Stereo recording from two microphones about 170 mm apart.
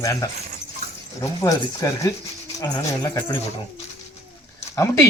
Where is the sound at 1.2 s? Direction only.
20° left (ahead or behind).